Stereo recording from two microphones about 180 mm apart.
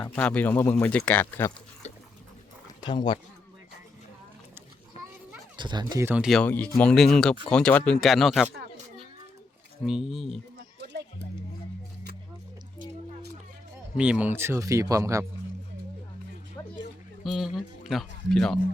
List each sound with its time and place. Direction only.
0.0 s speech: 5° left (ahead or behind)
2.8 s speech: 25° left (ahead or behind)
4.9 s children playing: 35° left (ahead or behind)
5.5 s speech: 25° right (ahead or behind)
5.9 s speech: 15° right (ahead or behind)
6.2 s speech: 5° left (ahead or behind)
9.8 s speech: centre (ahead or behind)
13.9 s speech: 5° right (ahead or behind)
16.6 s a sound: 15° left (ahead or behind)
17.2 s speech: centre (ahead or behind)